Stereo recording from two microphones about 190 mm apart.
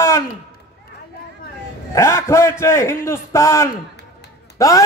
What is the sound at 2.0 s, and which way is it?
A man's voice, 15° left (ahead or behind).